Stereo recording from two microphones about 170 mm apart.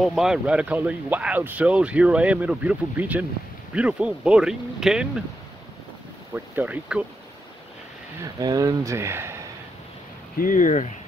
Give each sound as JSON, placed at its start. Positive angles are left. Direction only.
{"t": 0.0, "sound": "speech", "side_deg": 0}
{"t": 6.3, "sound": "speech", "side_deg": -10}
{"t": 8.2, "sound": "speech", "side_deg": -20}
{"t": 10.3, "sound": "speech", "side_deg": 55}